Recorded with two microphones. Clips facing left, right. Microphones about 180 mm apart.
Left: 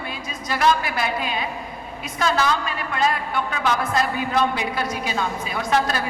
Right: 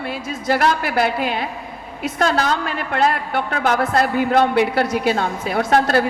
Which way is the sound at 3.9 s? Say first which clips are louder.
Right 6 dB; 65° right (ahead or behind).